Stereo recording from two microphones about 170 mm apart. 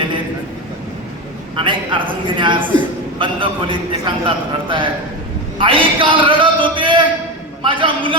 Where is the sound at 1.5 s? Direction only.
30° right (ahead or behind).